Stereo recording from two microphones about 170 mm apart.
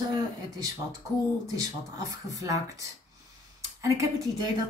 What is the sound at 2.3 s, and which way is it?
Speech, 20° right (ahead or behind).